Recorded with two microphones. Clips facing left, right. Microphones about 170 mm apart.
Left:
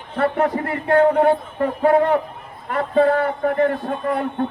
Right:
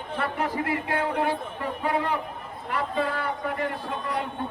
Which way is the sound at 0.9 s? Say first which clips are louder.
Left 15 dB; 55° left (ahead or behind).